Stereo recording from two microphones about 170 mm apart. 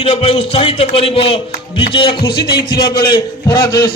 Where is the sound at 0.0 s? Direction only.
35° left (ahead or behind).